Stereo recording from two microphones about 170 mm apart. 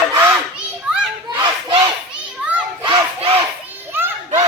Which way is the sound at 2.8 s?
30° right (ahead or behind).